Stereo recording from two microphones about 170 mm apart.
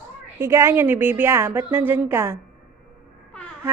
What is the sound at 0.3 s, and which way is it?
A woman's voice, 15° right (ahead or behind).